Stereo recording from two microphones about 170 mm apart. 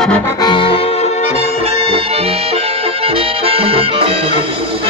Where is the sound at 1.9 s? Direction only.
35° right (ahead or behind).